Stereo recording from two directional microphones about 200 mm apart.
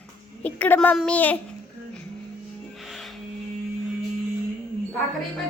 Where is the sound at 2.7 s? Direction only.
Centre (ahead or behind).